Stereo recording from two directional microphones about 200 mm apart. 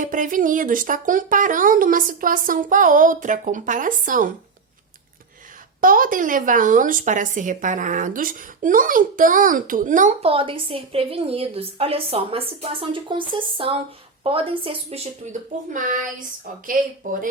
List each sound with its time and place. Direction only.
0.0 s speech: 40° right (ahead or behind)
5.8 s speech: 45° right (ahead or behind)